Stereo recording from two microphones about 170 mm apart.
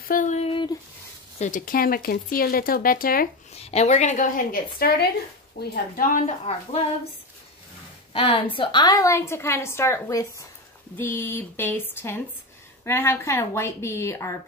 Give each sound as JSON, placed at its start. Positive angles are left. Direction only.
{"t": 0.1, "sound": "a sound", "side_deg": 45}
{"t": 1.4, "sound": "speech", "side_deg": 55}
{"t": 3.5, "sound": "a woman's voice", "side_deg": 40}
{"t": 8.1, "sound": "a woman's voice", "side_deg": 30}